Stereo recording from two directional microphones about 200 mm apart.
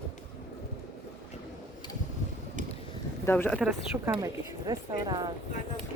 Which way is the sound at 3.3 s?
10° left (ahead or behind).